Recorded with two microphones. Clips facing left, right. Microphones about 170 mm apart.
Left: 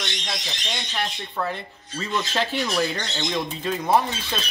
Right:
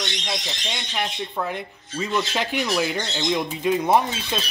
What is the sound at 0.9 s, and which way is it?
Speech, 15° right (ahead or behind).